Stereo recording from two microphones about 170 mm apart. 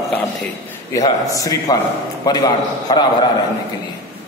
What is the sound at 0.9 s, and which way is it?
A man's voice, 20° left (ahead or behind).